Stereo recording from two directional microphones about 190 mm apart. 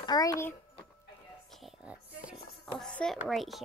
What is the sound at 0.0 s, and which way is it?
Speech, 20° left (ahead or behind).